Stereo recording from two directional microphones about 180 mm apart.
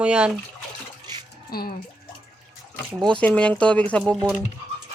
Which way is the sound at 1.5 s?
55° left (ahead or behind).